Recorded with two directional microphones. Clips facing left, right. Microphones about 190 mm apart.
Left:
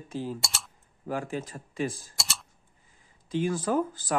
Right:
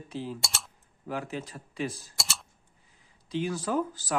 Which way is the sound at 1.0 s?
45° left (ahead or behind).